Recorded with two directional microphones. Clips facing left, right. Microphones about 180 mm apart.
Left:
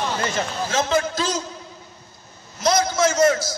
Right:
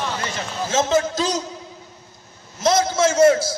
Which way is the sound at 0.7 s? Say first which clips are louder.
Right 3 dB; 20° right (ahead or behind).